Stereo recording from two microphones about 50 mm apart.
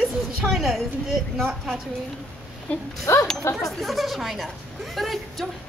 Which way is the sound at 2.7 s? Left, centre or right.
Left.